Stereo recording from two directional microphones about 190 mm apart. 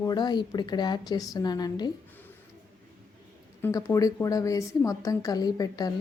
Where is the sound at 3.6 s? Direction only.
15° left (ahead or behind).